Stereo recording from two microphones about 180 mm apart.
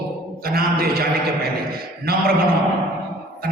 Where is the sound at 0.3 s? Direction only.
55° right (ahead or behind).